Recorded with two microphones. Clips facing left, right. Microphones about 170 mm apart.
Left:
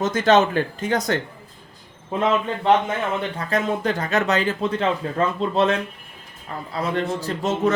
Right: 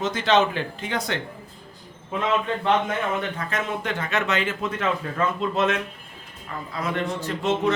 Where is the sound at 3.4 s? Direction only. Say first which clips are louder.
Left 5 dB; 35° left (ahead or behind).